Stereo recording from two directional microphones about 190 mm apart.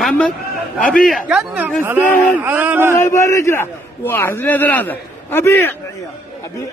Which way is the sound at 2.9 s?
15° left (ahead or behind).